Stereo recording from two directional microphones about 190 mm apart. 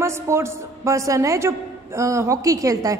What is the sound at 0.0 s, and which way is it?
A woman's voice, 15° right (ahead or behind).